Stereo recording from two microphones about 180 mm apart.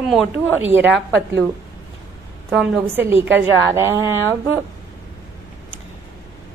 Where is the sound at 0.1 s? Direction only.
Centre (ahead or behind).